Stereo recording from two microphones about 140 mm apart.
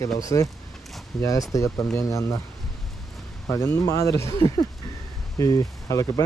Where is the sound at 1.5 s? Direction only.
20° left (ahead or behind).